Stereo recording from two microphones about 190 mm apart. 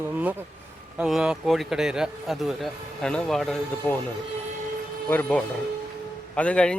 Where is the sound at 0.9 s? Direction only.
5° right (ahead or behind).